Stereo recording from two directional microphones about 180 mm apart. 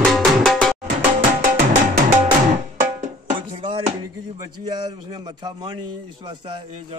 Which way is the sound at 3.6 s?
30° right (ahead or behind).